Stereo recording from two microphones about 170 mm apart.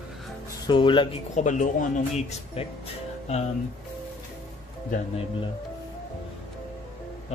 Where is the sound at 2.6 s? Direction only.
35° left (ahead or behind).